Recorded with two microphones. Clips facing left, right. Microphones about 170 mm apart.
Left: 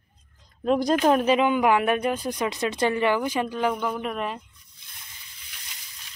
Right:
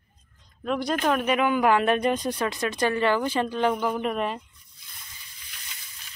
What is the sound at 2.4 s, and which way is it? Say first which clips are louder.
Speech: left 1 dB; 20° left (ahead or behind).